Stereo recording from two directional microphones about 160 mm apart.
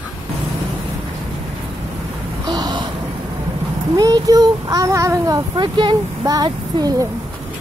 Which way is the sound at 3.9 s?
25° right (ahead or behind).